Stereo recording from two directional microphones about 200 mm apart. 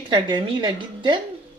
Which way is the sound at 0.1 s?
25° right (ahead or behind).